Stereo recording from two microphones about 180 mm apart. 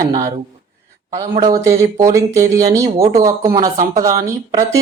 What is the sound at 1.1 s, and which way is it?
Speech, 20° right (ahead or behind).